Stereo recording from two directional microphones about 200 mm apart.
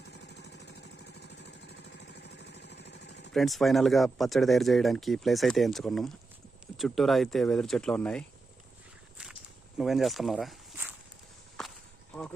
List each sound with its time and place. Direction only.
0.3 s vehicle: 60° left (ahead or behind)
1.2 s engine: 60° left (ahead or behind)
2.1 s vehicle: 60° left (ahead or behind)
3.3 s speech: centre (ahead or behind)
9.7 s speech: centre (ahead or behind)
11.6 s walk: 5° left (ahead or behind)